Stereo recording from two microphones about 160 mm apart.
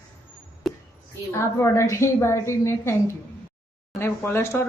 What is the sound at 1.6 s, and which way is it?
A woman's voice, 15° left (ahead or behind).